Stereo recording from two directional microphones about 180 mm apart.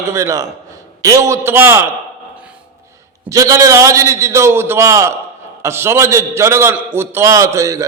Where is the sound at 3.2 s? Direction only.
15° right (ahead or behind).